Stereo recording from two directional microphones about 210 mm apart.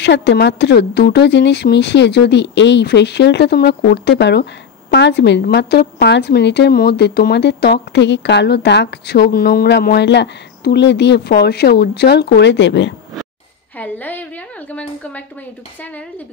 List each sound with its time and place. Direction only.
0.0 s speech: 55° left (ahead or behind)
13.7 s a woman's voice: 10° left (ahead or behind)